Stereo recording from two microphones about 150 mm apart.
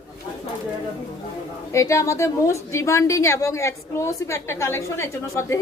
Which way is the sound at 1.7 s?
20° left (ahead or behind).